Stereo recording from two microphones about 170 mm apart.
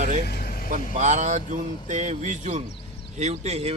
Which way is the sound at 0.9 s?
45° right (ahead or behind).